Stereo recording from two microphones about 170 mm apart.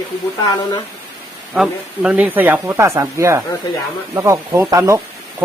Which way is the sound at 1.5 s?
5° right (ahead or behind).